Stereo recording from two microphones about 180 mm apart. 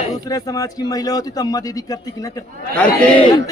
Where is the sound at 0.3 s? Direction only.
20° left (ahead or behind).